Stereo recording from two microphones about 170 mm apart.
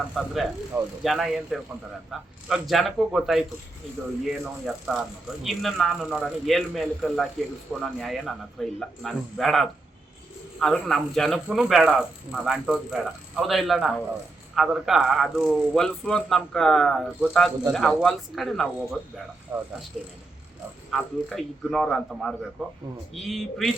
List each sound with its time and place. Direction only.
0.1 s a man's voice: centre (ahead or behind)
19.5 s speech: 20° right (ahead or behind)
20.9 s a man's voice: centre (ahead or behind)